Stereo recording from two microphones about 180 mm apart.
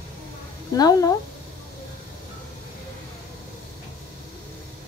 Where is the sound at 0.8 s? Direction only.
20° left (ahead or behind).